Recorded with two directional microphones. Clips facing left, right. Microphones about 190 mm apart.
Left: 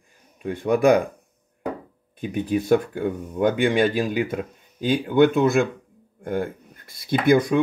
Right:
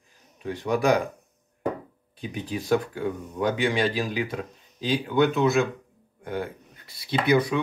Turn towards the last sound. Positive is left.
turn(degrees=50)  # may be behind; listen again after turning